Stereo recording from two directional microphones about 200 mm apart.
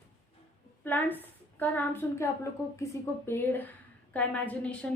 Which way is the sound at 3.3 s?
10° left (ahead or behind).